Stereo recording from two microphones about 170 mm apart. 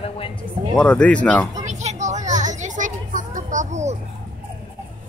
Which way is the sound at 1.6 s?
40° right (ahead or behind).